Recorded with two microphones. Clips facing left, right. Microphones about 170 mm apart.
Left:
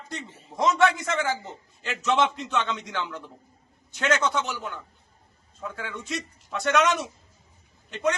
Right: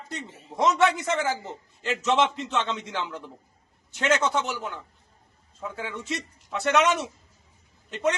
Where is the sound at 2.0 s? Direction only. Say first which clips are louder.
Even; 25° right (ahead or behind).